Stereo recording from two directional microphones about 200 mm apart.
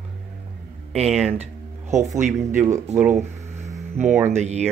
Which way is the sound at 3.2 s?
35° right (ahead or behind).